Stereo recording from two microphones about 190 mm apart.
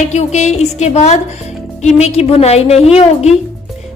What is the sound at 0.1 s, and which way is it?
A woman's voice, 35° left (ahead or behind).